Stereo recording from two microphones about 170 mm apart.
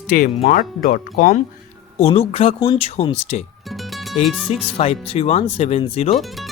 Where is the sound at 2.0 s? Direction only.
35° left (ahead or behind).